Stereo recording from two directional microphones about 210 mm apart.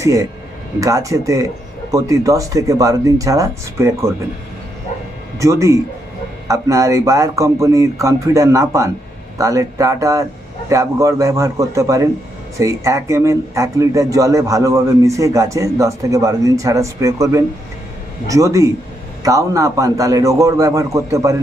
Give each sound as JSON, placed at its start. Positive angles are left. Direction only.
{"t": 0.0, "sound": "speech", "side_deg": -15}
{"t": 5.4, "sound": "speech", "side_deg": -15}